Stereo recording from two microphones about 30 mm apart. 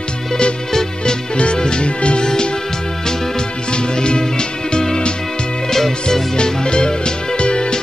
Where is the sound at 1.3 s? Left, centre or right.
Left.